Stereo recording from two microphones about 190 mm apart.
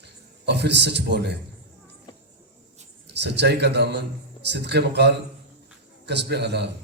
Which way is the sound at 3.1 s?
65° right (ahead or behind).